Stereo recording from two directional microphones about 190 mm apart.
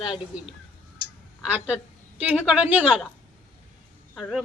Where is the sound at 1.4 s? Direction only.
5° right (ahead or behind).